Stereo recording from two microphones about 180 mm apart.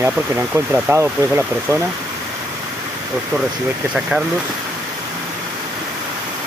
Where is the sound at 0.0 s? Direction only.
10° right (ahead or behind).